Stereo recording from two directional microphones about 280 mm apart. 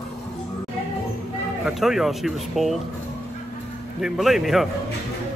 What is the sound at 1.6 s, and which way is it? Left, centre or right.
A woman's voice, centre.